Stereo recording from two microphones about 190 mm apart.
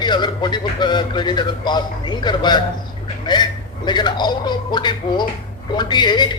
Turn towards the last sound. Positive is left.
turn(degrees=25)  # may be behind; listen again after turning